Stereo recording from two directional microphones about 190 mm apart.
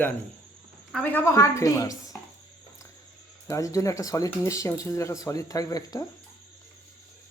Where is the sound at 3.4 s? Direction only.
15° left (ahead or behind).